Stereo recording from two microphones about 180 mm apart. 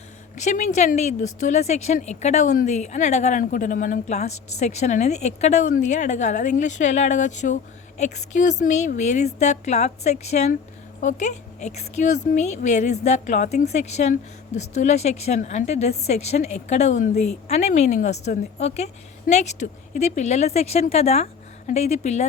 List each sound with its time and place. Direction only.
0.3 s a woman's voice: 40° left (ahead or behind)